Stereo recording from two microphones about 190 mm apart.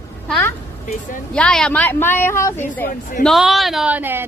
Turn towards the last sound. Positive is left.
turn(degrees=-10)  # may be behind; listen again after turning